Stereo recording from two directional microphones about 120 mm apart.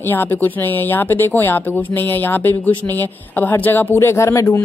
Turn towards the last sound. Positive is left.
turn(degrees=25)  # may be behind; listen again after turning